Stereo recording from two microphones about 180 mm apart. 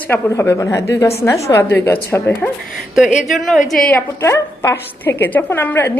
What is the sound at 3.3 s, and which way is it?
A woman's voice, centre (ahead or behind).